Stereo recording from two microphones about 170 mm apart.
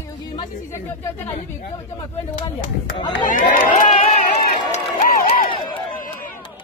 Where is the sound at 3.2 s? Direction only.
50° left (ahead or behind).